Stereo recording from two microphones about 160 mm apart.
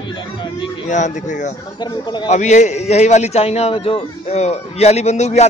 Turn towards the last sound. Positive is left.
turn(degrees=45)  # may be behind; listen again after turning